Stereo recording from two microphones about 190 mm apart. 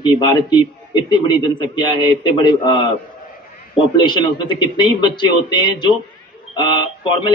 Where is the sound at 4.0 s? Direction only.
25° left (ahead or behind).